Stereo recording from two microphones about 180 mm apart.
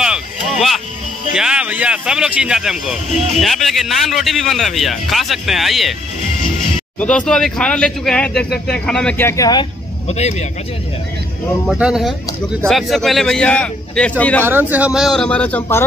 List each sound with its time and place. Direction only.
0.0 s a sound: centre (ahead or behind)
1.3 s speech: 5° right (ahead or behind)
7.0 s speech: 5° left (ahead or behind)
10.0 s speech: 35° left (ahead or behind)
11.6 s speech: 5° right (ahead or behind)
14.4 s speech: 10° right (ahead or behind); by 15.8 s 10° left (ahead or behind)